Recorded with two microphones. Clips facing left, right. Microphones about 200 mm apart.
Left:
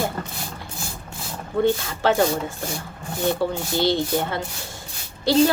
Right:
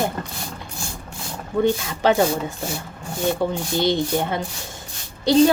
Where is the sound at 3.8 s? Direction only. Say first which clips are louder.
Right 1 dB; 20° right (ahead or behind).